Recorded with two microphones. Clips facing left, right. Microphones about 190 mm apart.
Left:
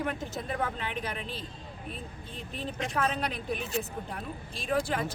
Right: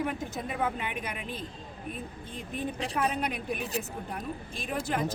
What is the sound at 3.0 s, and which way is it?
Speech, 10° right (ahead or behind).